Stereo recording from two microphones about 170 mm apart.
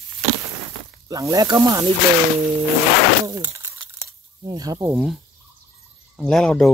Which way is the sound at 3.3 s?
20° right (ahead or behind).